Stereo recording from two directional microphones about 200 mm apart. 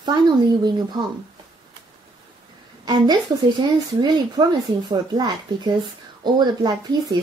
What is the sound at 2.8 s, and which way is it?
A woman's voice, 20° right (ahead or behind).